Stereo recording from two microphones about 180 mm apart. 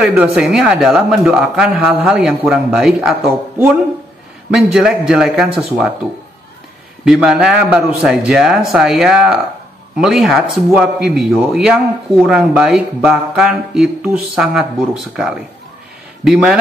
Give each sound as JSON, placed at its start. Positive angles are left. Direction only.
{"t": 0.0, "sound": "speech", "side_deg": -5}
{"t": 7.1, "sound": "speech", "side_deg": -5}